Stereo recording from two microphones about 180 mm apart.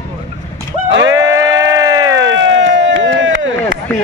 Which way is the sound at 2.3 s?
90° right.